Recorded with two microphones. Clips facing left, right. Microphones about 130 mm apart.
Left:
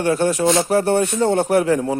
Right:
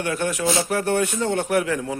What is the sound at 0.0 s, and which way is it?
Speech, 35° left (ahead or behind).